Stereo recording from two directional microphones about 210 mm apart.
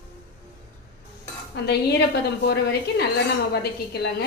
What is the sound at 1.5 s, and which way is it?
A woman's voice, 50° left (ahead or behind).